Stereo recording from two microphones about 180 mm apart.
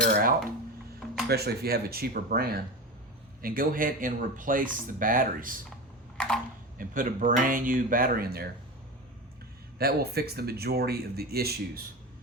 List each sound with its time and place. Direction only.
0.1 s dishes: 50° right (ahead or behind)
1.3 s speech: 60° right (ahead or behind)
6.1 s a sound: 5° left (ahead or behind)
6.7 s speech: 50° right (ahead or behind)
9.7 s speech: 60° right (ahead or behind)